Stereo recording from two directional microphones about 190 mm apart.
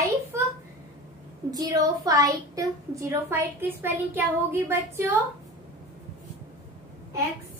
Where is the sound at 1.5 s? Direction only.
20° right (ahead or behind).